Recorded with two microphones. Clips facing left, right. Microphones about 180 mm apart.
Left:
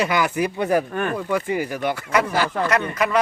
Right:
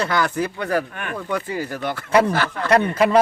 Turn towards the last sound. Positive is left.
turn(degrees=-30)  # may be behind; listen again after turning